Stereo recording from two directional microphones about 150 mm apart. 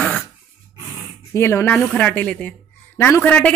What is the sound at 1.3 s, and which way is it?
Speech, 20° left (ahead or behind).